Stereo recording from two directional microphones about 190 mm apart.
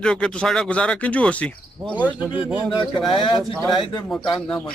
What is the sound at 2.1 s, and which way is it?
Speech, 5° right (ahead or behind).